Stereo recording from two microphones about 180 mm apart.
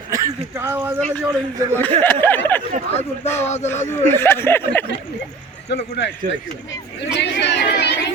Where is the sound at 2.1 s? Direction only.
10° left (ahead or behind).